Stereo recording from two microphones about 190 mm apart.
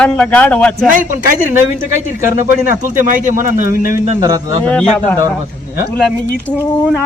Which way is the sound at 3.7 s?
50° left (ahead or behind).